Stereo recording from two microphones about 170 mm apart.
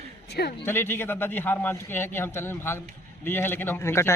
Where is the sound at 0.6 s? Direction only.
15° left (ahead or behind).